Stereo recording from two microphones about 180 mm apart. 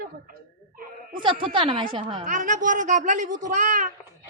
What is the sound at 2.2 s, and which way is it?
A woman's voice, 45° right (ahead or behind).